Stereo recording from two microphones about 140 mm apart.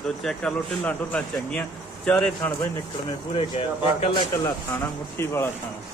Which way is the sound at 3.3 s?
40° left (ahead or behind).